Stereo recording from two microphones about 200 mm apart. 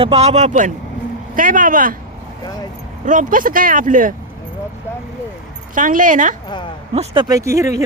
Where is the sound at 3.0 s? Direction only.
40° right (ahead or behind).